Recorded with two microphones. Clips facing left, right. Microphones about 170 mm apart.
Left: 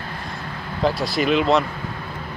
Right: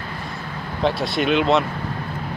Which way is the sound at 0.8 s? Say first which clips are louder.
Even; centre (ahead or behind).